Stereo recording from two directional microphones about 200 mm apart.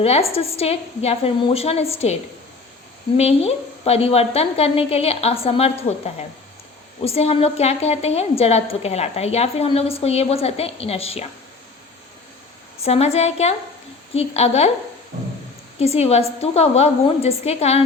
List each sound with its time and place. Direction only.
0.0 s a woman's voice: 30° left (ahead or behind)
3.2 s a woman's voice: 30° left (ahead or behind)
7.0 s a woman's voice: 30° left (ahead or behind)
12.8 s a woman's voice: 30° left (ahead or behind)
15.8 s a woman's voice: 30° left (ahead or behind)